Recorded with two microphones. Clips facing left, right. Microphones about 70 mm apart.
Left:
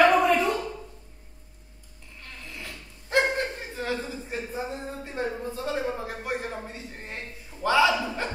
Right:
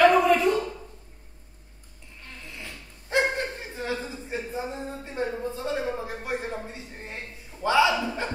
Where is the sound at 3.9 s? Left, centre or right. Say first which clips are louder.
Even; right.